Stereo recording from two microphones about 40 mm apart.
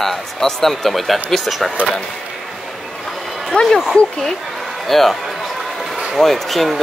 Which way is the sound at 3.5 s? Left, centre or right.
Centre.